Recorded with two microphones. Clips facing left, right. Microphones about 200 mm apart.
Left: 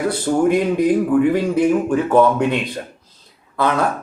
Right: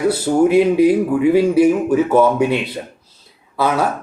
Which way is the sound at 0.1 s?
10° right (ahead or behind).